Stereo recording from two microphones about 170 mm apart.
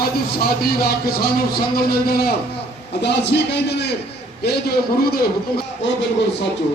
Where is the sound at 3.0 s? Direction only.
85° left.